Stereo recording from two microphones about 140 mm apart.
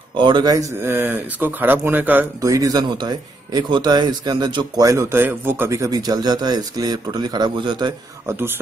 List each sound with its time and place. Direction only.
0.2 s speech: 30° right (ahead or behind); by 2.2 s 15° right (ahead or behind)
2.4 s speech: 25° right (ahead or behind)
8.3 s speech: 15° right (ahead or behind)